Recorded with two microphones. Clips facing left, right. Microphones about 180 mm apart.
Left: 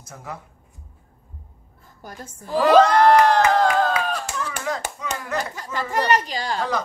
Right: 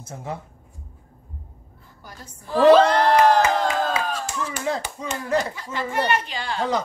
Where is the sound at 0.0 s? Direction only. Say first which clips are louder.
Right 4 dB; 25° right (ahead or behind).